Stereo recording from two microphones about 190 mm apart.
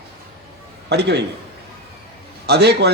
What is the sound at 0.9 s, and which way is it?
Speech, 60° right (ahead or behind).